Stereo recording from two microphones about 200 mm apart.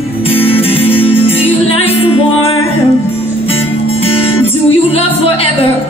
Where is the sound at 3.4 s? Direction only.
30° left (ahead or behind).